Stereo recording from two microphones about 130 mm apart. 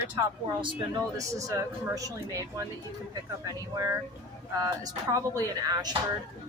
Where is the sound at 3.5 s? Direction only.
25° right (ahead or behind).